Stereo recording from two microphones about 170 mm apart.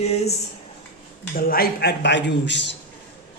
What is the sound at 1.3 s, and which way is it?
A man's voice, 60° left (ahead or behind).